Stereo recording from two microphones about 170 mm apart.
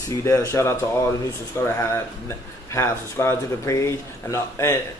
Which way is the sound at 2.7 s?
15° left (ahead or behind).